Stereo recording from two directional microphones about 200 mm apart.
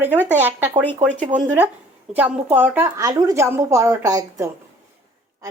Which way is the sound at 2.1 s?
10° right (ahead or behind).